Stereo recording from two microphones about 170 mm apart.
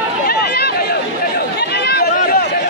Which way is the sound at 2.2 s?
60° left (ahead or behind).